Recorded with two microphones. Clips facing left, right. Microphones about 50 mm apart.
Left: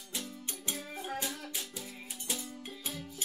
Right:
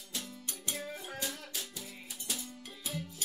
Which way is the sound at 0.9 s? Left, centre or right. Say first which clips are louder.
Left 2 dB; left.